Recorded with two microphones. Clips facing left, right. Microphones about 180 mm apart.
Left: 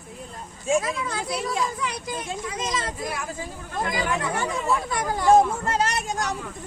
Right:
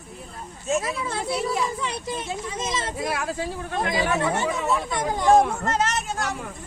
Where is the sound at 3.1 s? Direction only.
75° right (ahead or behind).